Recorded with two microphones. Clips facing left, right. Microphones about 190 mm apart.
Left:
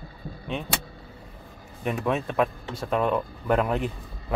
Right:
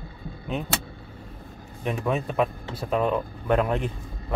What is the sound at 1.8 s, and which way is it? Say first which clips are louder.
Speech: even; centre (ahead or behind).